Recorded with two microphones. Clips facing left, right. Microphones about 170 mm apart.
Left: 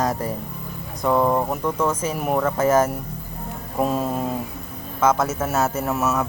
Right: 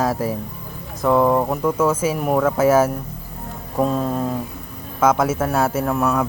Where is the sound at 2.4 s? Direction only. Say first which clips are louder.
Right 3 dB; 5° right (ahead or behind).